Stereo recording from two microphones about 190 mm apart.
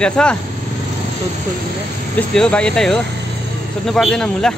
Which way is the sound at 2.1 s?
5° left (ahead or behind).